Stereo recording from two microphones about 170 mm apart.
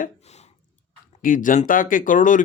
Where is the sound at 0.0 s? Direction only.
40° left (ahead or behind).